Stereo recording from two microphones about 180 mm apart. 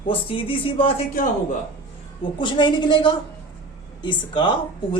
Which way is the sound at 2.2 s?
25° left (ahead or behind).